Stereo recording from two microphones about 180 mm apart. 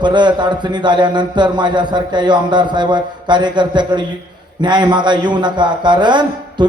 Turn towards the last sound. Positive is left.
turn(degrees=-25)  # may be behind; listen again after turning